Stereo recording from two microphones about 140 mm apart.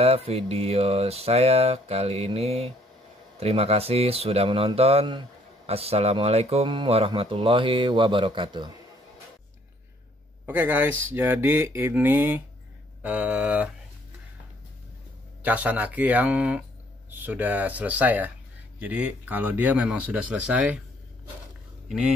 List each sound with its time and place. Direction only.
0.0 s speech: 45° right (ahead or behind)
10.4 s speech: 15° right (ahead or behind)
15.4 s speech: 10° right (ahead or behind)
21.8 s speech: 5° right (ahead or behind)